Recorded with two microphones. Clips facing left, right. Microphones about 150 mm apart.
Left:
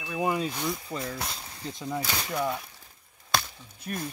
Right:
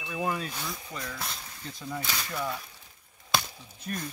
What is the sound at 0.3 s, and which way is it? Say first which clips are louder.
Speech: left 5 dB; 15° left (ahead or behind).